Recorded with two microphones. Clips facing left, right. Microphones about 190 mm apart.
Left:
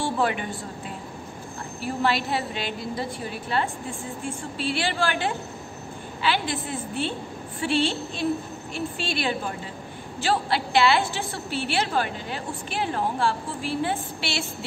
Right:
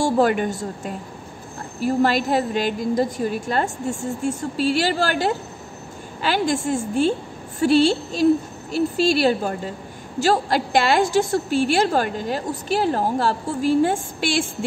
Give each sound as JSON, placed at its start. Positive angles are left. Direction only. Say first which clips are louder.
{"t": 0.0, "sound": "a woman's voice", "louder": "right 7 dB", "side_deg": -45}